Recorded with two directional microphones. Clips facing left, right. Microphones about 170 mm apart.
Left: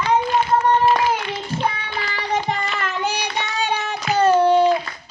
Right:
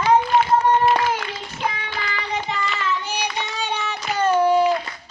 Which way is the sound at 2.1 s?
40° left (ahead or behind).